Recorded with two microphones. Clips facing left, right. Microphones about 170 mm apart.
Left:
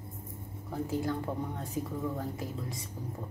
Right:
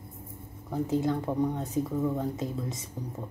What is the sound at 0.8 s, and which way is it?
A woman's voice, 20° right (ahead or behind).